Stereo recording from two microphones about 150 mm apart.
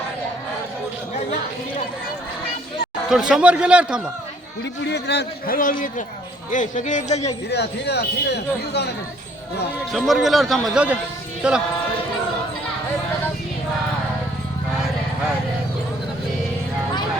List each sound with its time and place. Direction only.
3.1 s a man's voice: 5° right (ahead or behind)
5.1 s speech: 70° left (ahead or behind); by 7.3 s 45° left (ahead or behind)
7.5 s speech: 90° left
9.9 s a man's voice: centre (ahead or behind)